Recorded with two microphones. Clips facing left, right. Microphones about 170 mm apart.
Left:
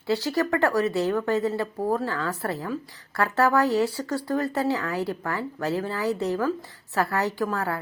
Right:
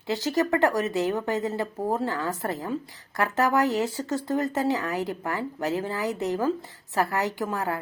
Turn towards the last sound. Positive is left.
turn(degrees=-15)  # may be behind; listen again after turning